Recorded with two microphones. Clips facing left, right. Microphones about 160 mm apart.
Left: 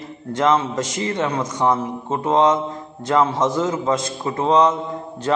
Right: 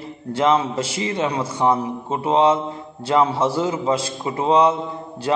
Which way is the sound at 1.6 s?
5° right (ahead or behind).